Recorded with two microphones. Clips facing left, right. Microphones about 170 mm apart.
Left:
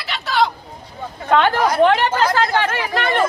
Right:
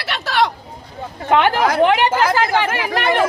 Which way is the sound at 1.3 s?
15° right (ahead or behind).